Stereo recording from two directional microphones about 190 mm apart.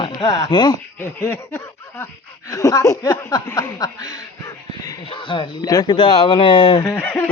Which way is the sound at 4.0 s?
90° right.